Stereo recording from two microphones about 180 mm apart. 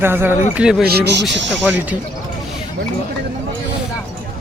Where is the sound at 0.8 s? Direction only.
60° right (ahead or behind).